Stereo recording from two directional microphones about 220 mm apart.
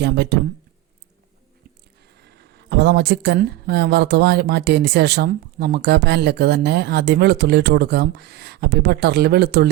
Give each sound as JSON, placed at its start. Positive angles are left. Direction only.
{"t": 0.0, "sound": "speech", "side_deg": -50}
{"t": 2.1, "sound": "speech", "side_deg": -50}